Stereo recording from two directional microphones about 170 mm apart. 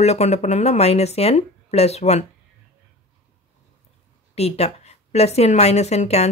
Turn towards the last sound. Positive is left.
turn(degrees=40)  # may be behind; listen again after turning